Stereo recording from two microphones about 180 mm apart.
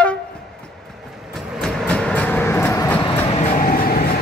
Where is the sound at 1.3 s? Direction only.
Centre (ahead or behind); by 3.5 s 30° left (ahead or behind).